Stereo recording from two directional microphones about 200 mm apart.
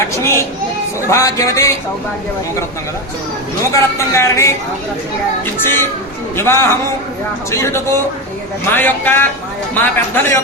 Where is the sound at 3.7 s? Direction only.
15° left (ahead or behind).